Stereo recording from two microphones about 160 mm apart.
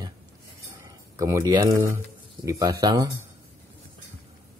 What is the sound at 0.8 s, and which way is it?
Speech, 20° right (ahead or behind).